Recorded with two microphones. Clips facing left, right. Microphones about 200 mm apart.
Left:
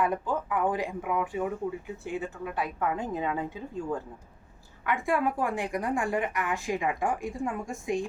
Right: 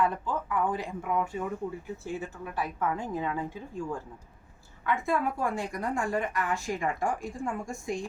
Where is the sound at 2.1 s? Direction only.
20° left (ahead or behind).